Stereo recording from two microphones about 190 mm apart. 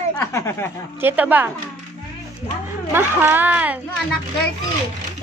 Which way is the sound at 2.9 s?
10° right (ahead or behind).